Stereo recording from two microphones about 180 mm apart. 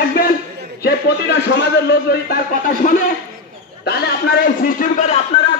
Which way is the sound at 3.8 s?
65° left (ahead or behind).